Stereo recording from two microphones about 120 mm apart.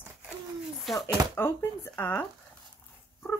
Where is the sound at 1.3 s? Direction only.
20° left (ahead or behind).